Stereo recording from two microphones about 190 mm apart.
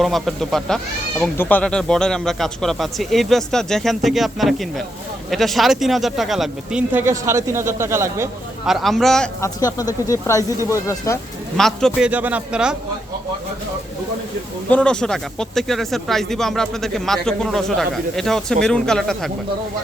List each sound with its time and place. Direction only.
0.0 s speech: centre (ahead or behind); by 8.3 s 15° right (ahead or behind)
8.6 s speech: centre (ahead or behind)
9.4 s speech: 20° left (ahead or behind)
11.5 s speech: centre (ahead or behind)
14.7 s speech: 5° left (ahead or behind)